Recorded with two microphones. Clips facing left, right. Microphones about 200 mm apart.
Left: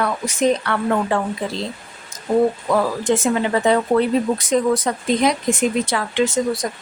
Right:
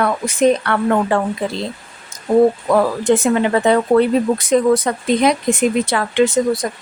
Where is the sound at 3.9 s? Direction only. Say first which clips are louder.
Right 5 dB; 90° right.